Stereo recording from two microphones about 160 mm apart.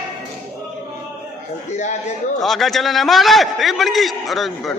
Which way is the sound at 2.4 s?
Centre (ahead or behind).